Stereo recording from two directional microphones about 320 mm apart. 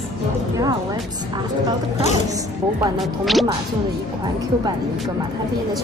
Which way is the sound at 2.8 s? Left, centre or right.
Centre.